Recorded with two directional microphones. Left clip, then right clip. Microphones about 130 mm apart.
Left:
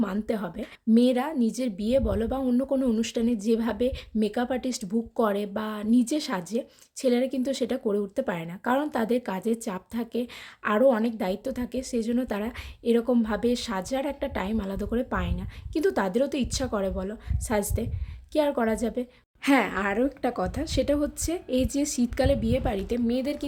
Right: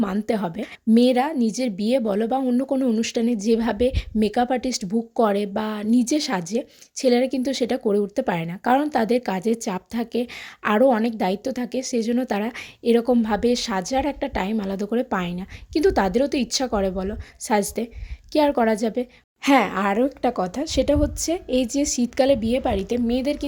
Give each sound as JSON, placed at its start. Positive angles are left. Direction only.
{"t": 0.0, "sound": "a woman's voice", "side_deg": -35}